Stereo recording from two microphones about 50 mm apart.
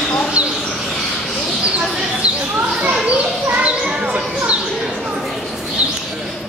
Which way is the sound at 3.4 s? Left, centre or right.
Right.